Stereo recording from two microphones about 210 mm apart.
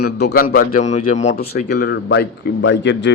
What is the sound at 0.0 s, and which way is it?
A man's voice, 50° left (ahead or behind).